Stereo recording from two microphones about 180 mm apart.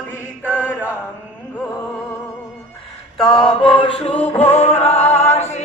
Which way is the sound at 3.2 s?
30° left (ahead or behind).